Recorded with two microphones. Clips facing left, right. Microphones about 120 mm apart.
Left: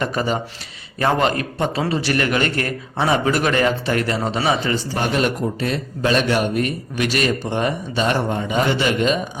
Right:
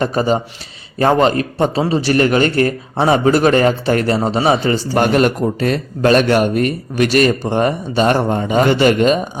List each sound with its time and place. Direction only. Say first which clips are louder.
0.0 s a man's voice: right 6 dB; 35° right (ahead or behind)
4.9 s a man's voice: right 8 dB; 55° right (ahead or behind)